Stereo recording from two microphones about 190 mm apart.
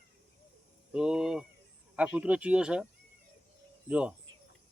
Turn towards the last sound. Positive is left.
turn(degrees=-5)  # may be behind; listen again after turning